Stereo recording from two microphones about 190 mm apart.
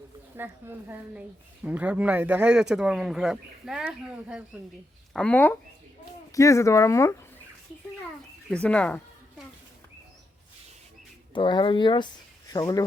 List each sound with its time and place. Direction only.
0.3 s a woman's voice: 10° right (ahead or behind)
5.1 s speech: 5° left (ahead or behind)
8.4 s speech: 5° left (ahead or behind)
11.3 s speech: 25° left (ahead or behind)